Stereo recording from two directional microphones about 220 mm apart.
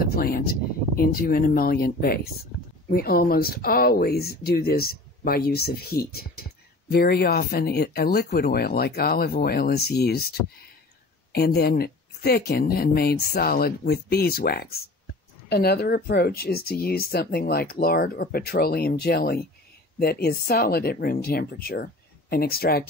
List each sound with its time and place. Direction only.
0.0 s speech: 45° left (ahead or behind)